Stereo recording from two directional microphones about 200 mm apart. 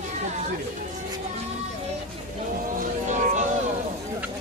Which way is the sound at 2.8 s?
40° right (ahead or behind).